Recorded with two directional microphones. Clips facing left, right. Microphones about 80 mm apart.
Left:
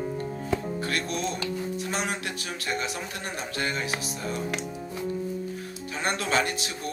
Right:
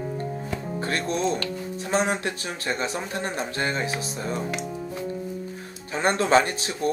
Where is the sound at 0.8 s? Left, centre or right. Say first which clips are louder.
Right 6 dB; right.